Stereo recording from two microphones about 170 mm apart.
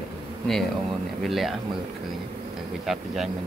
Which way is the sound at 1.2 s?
Centre (ahead or behind).